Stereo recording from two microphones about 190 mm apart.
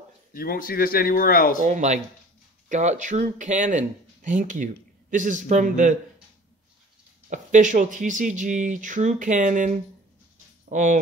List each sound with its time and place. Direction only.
0.3 s speech: 50° left (ahead or behind)
1.6 s speech: 40° right (ahead or behind)
7.2 s speech: 40° right (ahead or behind)
10.7 s speech: 40° right (ahead or behind)